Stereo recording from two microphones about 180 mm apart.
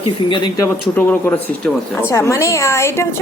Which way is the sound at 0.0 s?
25° left (ahead or behind).